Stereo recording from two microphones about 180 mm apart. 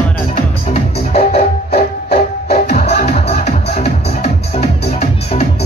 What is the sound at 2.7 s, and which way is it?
Music, 45° left (ahead or behind).